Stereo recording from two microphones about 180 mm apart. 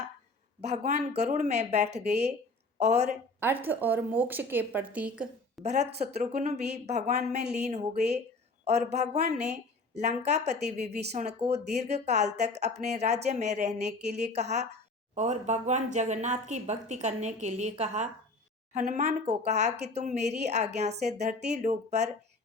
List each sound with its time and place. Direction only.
0.6 s speech: 40° right (ahead or behind)
3.4 s a woman's voice: 10° right (ahead or behind)
5.6 s speech: 40° right (ahead or behind)